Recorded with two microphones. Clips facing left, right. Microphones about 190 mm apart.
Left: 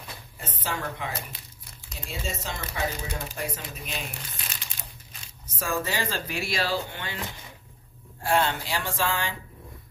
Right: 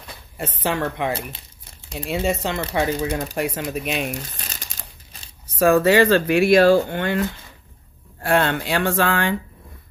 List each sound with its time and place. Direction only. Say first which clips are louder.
0.4 s speech: right 10 dB; 65° right (ahead or behind)
5.6 s speech: right 15 dB; 65° right (ahead or behind)
8.2 s speech: right 5 dB; 60° right (ahead or behind)